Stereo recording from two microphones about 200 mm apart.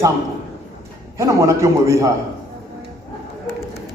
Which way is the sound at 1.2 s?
15° right (ahead or behind).